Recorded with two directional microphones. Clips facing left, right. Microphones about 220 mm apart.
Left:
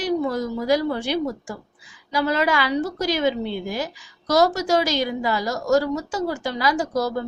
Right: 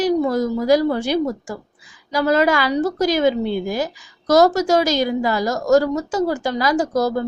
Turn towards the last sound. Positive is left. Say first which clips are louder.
# right 4 dB
turn(degrees=-45)  # may be behind; listen again after turning